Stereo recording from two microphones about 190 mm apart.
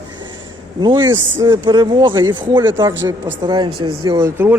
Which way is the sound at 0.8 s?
25° right (ahead or behind).